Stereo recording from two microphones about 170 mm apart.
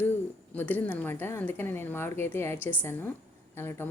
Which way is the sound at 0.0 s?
10° left (ahead or behind).